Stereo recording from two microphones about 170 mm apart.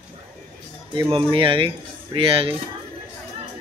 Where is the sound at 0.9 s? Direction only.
30° right (ahead or behind).